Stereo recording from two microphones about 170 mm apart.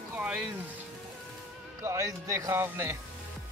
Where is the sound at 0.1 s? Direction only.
5° right (ahead or behind).